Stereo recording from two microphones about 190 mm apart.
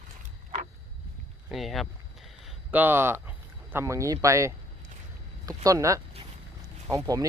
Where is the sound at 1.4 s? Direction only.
Centre (ahead or behind); by 4.5 s 15° right (ahead or behind).